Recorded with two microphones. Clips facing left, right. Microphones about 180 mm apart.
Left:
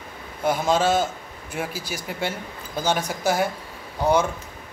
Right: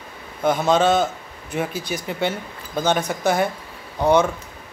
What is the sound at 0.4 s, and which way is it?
Speech, 10° left (ahead or behind).